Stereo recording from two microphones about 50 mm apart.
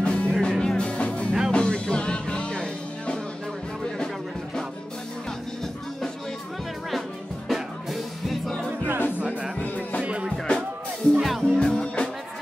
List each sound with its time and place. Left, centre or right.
0.0 s music: left
7.4 s music: centre
8.6 s music: right
10.3 s music: centre
11.2 s music: centre